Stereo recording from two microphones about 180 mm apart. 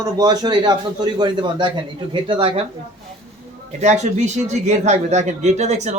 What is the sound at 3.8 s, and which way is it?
Speech, 40° right (ahead or behind).